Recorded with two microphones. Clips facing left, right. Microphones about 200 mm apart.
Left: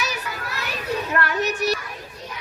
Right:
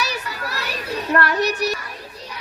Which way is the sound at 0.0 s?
35° right (ahead or behind).